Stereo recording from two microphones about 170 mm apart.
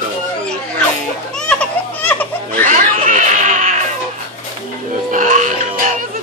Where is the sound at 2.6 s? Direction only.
50° right (ahead or behind).